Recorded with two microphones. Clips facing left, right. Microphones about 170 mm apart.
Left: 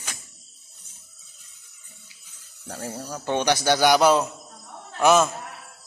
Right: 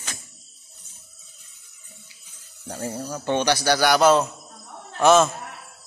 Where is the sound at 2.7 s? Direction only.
10° right (ahead or behind).